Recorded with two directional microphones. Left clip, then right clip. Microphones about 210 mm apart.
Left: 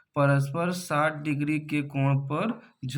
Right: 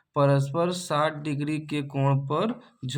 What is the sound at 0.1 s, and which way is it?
Speech, 25° right (ahead or behind).